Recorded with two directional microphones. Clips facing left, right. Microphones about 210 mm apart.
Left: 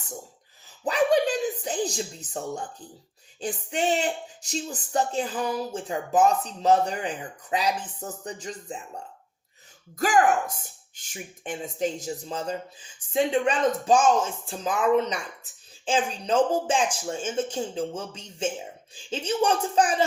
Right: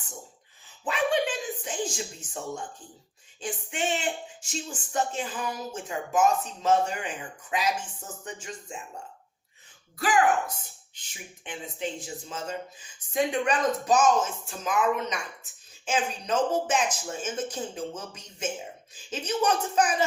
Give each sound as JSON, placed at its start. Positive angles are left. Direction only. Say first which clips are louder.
{"t": 0.9, "sound": "speech", "louder": "left 5 dB", "side_deg": 40}
{"t": 10.0, "sound": "speech", "louder": "left 2 dB", "side_deg": 45}